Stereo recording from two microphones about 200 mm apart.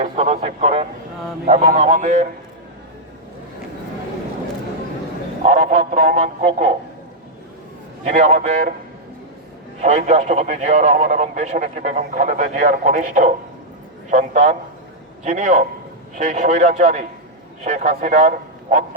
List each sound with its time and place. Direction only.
0.0 s vehicle: 30° right (ahead or behind)
1.5 s speech: 35° right (ahead or behind)
5.5 s speech: 35° right (ahead or behind)
8.0 s speech: 35° right (ahead or behind)
9.8 s a man's voice: 35° right (ahead or behind)